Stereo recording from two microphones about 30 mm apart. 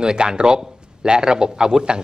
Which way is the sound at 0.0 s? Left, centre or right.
Right.